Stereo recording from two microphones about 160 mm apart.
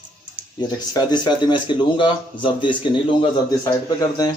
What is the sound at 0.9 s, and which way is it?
Speech, 30° left (ahead or behind).